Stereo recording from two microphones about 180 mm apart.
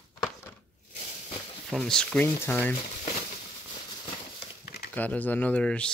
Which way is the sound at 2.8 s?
40° left (ahead or behind).